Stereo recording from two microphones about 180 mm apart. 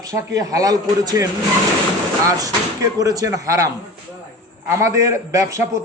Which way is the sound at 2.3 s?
20° right (ahead or behind).